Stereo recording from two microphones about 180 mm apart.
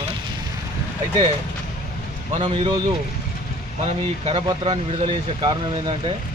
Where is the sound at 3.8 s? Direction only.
35° right (ahead or behind).